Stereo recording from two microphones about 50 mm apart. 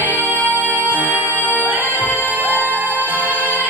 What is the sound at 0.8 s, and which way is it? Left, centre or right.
Music, right.